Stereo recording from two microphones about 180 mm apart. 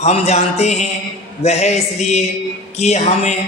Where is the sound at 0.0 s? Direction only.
35° left (ahead or behind).